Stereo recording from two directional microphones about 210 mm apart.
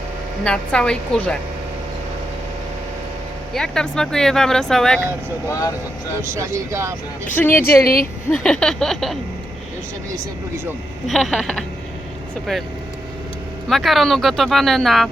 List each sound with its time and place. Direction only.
0.4 s speech: 5° left (ahead or behind)
3.5 s speech: 5° left (ahead or behind)
5.5 s speech: 15° left (ahead or behind)
6.2 s speech: 15° right (ahead or behind)
7.3 s speech: 10° left (ahead or behind)
11.0 s speech: centre (ahead or behind)
13.7 s speech: centre (ahead or behind)